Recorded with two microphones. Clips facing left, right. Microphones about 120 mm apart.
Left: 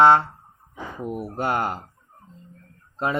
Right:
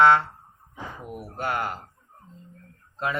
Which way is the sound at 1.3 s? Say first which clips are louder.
Left 3 dB; 30° left (ahead or behind).